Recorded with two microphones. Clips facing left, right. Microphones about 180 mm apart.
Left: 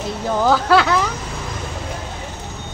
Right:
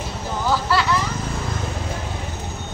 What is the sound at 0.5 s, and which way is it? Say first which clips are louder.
Speech: left 5 dB; 85° left.